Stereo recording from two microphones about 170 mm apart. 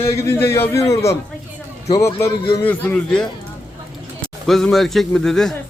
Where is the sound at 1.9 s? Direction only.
15° left (ahead or behind).